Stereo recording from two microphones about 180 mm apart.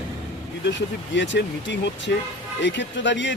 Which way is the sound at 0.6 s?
85° left.